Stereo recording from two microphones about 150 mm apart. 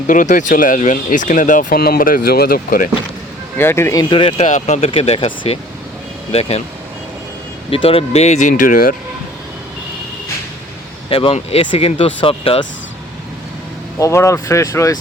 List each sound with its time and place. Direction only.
0.1 s speech: 60° left (ahead or behind)
3.6 s speech: 15° left (ahead or behind)
4.1 s speech: 35° left (ahead or behind)
4.4 s speech: 50° left (ahead or behind)
4.9 s speech: 40° left (ahead or behind)
7.7 s speech: 40° left (ahead or behind); by 9.0 s 70° left (ahead or behind)
11.1 s speech: 40° left (ahead or behind)
14.0 s speech: 20° left (ahead or behind)